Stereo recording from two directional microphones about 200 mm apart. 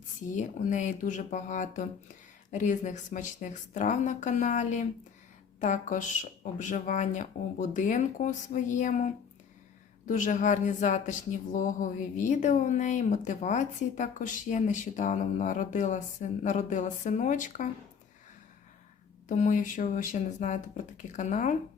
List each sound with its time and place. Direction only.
0.3 s a woman's voice: 35° left (ahead or behind)
19.3 s a woman's voice: 40° left (ahead or behind)